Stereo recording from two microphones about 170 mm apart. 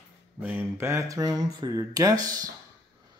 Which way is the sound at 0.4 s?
10° right (ahead or behind).